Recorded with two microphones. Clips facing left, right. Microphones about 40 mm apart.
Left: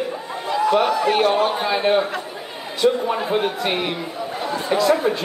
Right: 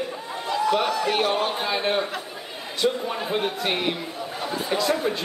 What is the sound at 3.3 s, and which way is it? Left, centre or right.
Speech, centre.